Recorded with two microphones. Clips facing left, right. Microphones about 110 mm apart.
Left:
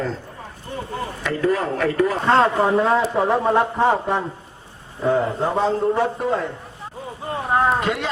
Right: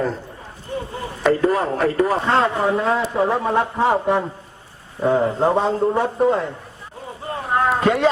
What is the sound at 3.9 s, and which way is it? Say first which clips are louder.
Speech: right 2 dB; 15° right (ahead or behind).